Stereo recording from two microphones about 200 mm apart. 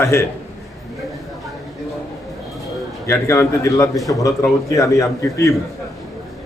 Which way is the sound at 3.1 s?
15° left (ahead or behind).